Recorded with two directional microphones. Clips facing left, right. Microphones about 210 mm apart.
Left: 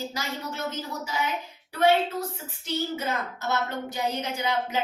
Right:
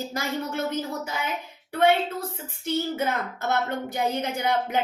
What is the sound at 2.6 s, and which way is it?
Speech, 55° right (ahead or behind).